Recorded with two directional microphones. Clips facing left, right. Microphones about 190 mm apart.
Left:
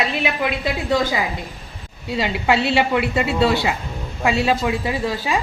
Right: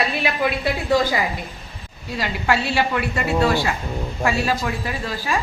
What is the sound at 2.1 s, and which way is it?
A woman's voice, 20° left (ahead or behind).